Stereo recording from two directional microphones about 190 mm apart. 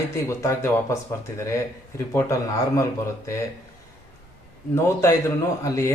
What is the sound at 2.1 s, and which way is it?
Speech, 10° left (ahead or behind).